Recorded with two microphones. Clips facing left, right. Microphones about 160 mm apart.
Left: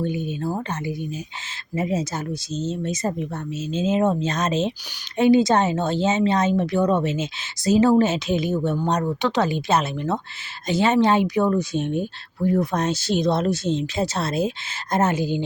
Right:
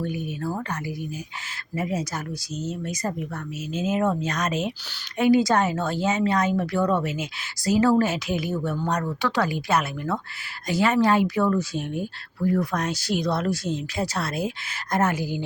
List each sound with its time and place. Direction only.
0.0 s speech: 20° left (ahead or behind)